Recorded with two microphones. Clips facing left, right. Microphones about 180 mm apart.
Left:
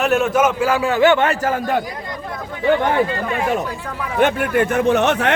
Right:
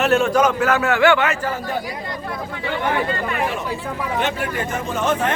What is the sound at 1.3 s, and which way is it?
Speech, 45° left (ahead or behind).